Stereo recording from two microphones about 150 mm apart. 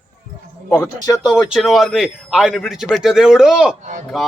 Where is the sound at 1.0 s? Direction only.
25° left (ahead or behind).